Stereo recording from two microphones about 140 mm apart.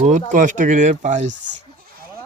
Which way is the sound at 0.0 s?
60° right (ahead or behind).